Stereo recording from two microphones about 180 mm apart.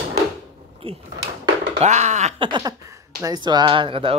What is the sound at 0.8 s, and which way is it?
Speech, 30° right (ahead or behind).